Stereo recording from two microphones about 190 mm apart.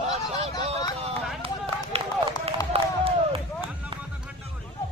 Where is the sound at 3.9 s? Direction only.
25° right (ahead or behind).